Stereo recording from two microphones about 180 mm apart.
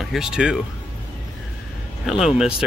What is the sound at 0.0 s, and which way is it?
Speech, centre (ahead or behind).